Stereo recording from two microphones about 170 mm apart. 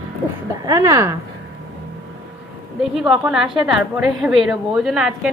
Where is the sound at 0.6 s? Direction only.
20° right (ahead or behind).